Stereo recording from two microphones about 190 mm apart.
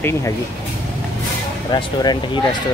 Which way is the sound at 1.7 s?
20° left (ahead or behind).